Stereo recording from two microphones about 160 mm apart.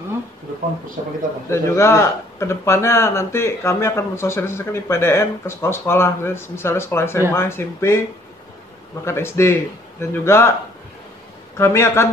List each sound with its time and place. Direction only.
1.5 s speech: 15° left (ahead or behind)
9.0 s speech: 15° left (ahead or behind)
11.5 s speech: 15° left (ahead or behind)